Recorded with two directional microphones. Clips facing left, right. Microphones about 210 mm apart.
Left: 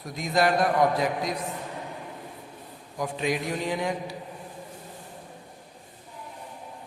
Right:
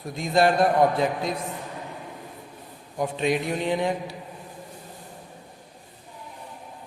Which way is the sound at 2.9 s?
25° right (ahead or behind).